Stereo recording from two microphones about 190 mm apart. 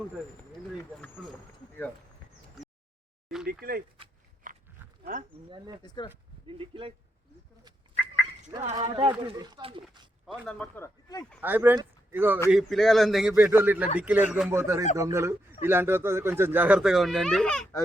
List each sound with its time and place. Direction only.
3.4 s speech: 50° right (ahead or behind)
4.4 s livestock: 45° right (ahead or behind)
4.8 s wild animals: 10° right (ahead or behind)
5.5 s speech: 25° right (ahead or behind)
5.8 s speech: 20° left (ahead or behind)
6.5 s speech: 30° right (ahead or behind)
7.6 s bird: 25° right (ahead or behind)
8.8 s speech: 30° right (ahead or behind)
10.4 s speech: 5° left (ahead or behind)
11.3 s a man's voice: 10° right (ahead or behind)
13.3 s speech: 15° right (ahead or behind); by 17.7 s 5° left (ahead or behind)